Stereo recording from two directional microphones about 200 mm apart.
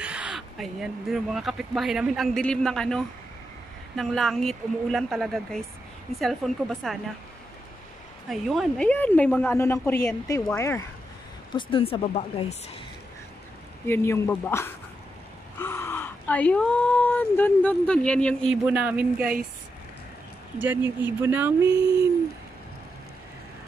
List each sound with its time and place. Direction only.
0.0 s speech: 5° right (ahead or behind)
8.3 s a woman's voice: centre (ahead or behind)
11.5 s speech: 25° left (ahead or behind)
13.8 s a woman's voice: 10° left (ahead or behind); by 19.2 s 10° right (ahead or behind)
20.6 s speech: 10° right (ahead or behind)